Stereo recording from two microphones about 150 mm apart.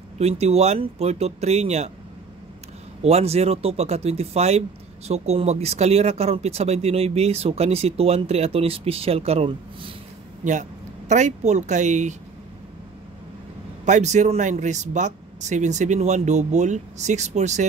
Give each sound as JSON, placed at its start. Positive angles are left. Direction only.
{"t": 0.2, "sound": "speech", "side_deg": -45}
{"t": 3.0, "sound": "speech", "side_deg": -45}
{"t": 10.4, "sound": "speech", "side_deg": -55}
{"t": 13.8, "sound": "speech", "side_deg": -55}